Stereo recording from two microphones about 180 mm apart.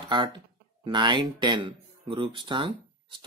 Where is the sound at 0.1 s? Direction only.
25° right (ahead or behind).